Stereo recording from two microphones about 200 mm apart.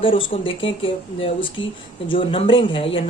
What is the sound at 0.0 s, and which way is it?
Speech, 25° left (ahead or behind).